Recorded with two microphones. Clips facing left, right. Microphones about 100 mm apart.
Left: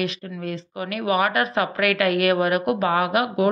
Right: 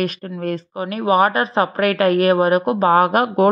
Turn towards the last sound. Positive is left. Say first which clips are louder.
# right 6 dB
turn(degrees=-45)  # may be behind; listen again after turning